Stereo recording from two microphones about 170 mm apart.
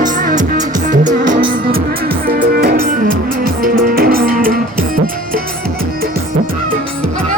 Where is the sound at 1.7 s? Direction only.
60° right (ahead or behind).